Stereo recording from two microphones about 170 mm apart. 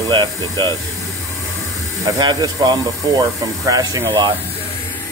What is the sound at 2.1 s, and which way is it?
Speech, 25° right (ahead or behind).